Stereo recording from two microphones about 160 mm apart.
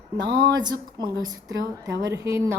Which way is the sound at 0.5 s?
25° right (ahead or behind).